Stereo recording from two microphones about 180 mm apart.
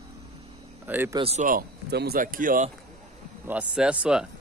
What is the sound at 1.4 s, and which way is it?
Speech, 50° right (ahead or behind).